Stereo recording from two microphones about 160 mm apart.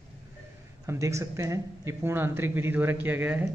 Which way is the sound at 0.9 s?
20° right (ahead or behind).